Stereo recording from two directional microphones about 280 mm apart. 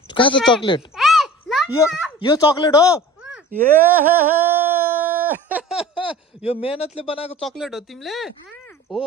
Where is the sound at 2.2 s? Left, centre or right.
Centre.